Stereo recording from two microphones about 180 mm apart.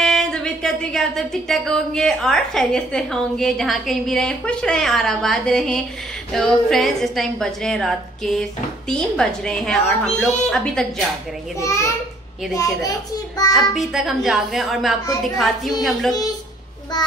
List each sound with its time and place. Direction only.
0.0 s speech: centre (ahead or behind)
11.6 s a child's voice: 15° left (ahead or behind)
13.6 s speech: centre (ahead or behind)